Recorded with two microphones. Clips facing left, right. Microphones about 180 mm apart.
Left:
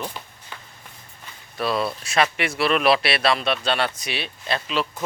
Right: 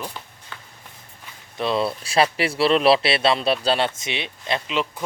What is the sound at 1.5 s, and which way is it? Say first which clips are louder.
Speech: right 2 dB; 25° right (ahead or behind).